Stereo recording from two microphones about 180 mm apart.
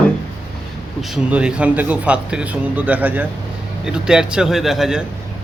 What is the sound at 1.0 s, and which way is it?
A man's voice, 5° right (ahead or behind).